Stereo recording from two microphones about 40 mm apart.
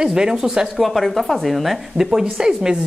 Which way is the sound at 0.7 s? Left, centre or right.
Centre.